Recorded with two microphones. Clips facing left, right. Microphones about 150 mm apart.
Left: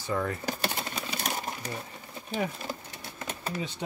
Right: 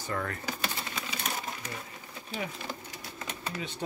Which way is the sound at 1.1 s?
35° left (ahead or behind).